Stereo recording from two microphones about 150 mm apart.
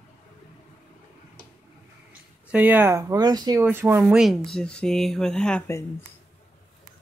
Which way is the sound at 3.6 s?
15° right (ahead or behind).